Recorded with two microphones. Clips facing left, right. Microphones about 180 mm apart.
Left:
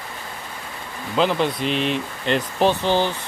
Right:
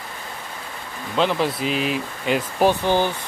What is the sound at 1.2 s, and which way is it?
Speech, centre (ahead or behind).